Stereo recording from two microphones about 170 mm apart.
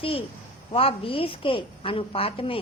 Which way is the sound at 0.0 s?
35° left (ahead or behind).